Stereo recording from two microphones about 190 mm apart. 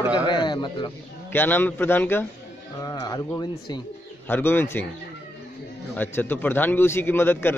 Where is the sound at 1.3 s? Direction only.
10° left (ahead or behind).